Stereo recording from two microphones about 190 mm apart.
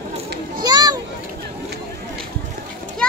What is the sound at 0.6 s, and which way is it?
Children playing, 20° right (ahead or behind).